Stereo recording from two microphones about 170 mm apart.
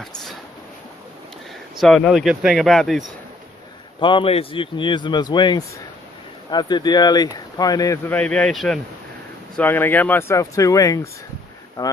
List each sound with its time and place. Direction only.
1.8 s speech: centre (ahead or behind)
4.0 s speech: 30° left (ahead or behind)